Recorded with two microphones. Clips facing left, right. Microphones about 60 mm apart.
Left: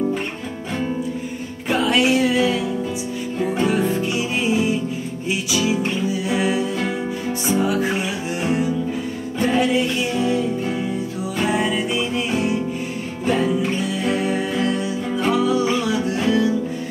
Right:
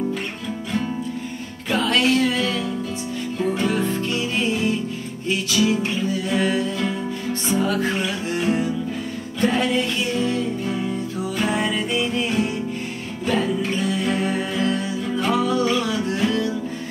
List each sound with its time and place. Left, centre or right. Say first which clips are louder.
1.7 s music: left 2 dB; centre
11.4 s music: left 3 dB; centre